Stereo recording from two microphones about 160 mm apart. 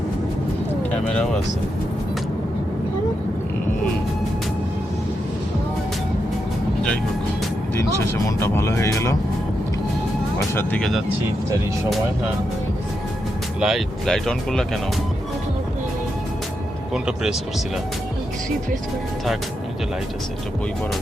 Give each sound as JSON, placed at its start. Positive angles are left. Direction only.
{"t": 1.1, "sound": "speech", "side_deg": 5}
{"t": 7.8, "sound": "speech", "side_deg": 15}
{"t": 10.3, "sound": "speech", "side_deg": 15}
{"t": 13.6, "sound": "speech", "side_deg": 0}
{"t": 16.9, "sound": "speech", "side_deg": -5}